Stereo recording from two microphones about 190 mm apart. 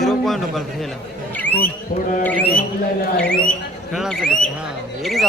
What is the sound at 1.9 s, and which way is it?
Speech, 45° left (ahead or behind).